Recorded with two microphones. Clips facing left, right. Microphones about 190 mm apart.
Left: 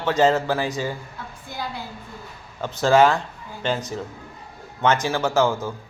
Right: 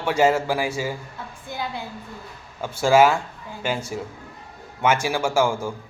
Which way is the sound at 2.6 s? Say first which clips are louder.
Even; 10° right (ahead or behind).